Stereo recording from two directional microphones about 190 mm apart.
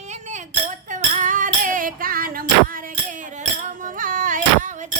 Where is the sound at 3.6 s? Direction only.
45° right (ahead or behind).